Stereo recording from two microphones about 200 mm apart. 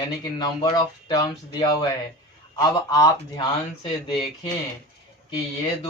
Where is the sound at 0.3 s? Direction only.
20° left (ahead or behind).